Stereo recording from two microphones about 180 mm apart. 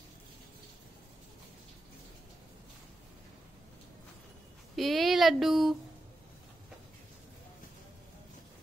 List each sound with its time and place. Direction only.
4.7 s speech: centre (ahead or behind)